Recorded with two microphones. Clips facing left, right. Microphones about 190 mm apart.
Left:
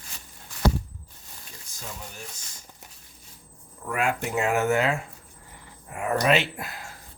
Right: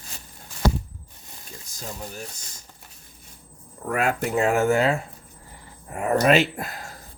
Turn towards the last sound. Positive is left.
turn(degrees=-40)  # may be behind; listen again after turning